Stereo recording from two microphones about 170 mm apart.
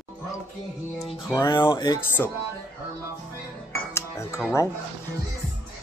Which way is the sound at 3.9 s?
15° left (ahead or behind).